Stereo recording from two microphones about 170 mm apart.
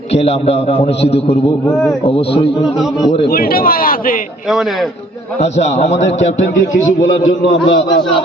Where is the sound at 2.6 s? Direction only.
Centre (ahead or behind).